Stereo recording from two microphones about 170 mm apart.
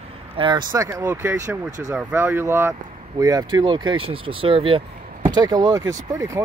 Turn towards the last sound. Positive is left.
turn(degrees=-20)  # may be behind; listen again after turning